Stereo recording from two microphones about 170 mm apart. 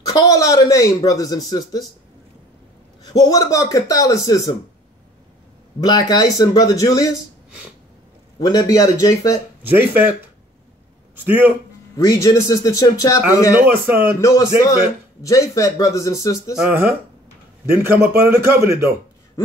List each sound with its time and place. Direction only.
0.0 s speech: 20° left (ahead or behind)
3.1 s speech: 20° left (ahead or behind)
5.9 s speech: 20° left (ahead or behind)
8.4 s speech: 20° left (ahead or behind)
9.6 s a man's voice: 10° right (ahead or behind)
11.2 s a man's voice: 10° right (ahead or behind)
12.0 s speech: 20° left (ahead or behind)
16.5 s a man's voice: 10° right (ahead or behind)